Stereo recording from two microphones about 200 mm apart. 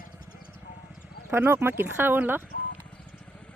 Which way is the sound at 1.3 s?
10° right (ahead or behind).